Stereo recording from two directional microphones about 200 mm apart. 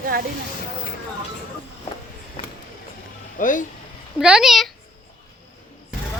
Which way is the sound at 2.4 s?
25° left (ahead or behind).